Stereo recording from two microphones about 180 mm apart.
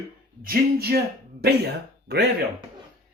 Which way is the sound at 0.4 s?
55° right (ahead or behind).